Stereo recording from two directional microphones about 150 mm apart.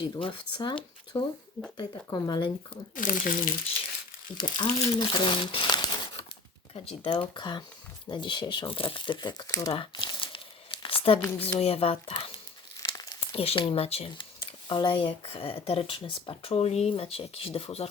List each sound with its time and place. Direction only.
0.2 s speech: 35° left (ahead or behind)
2.9 s speech: 65° left (ahead or behind)
4.4 s speech: 30° left (ahead or behind)
9.7 s crumpling: 35° left (ahead or behind)
11.2 s speech: 15° left (ahead or behind)
11.6 s speech: 40° left (ahead or behind)
12.8 s crumpling: 25° left (ahead or behind)
13.3 s speech: 40° left (ahead or behind)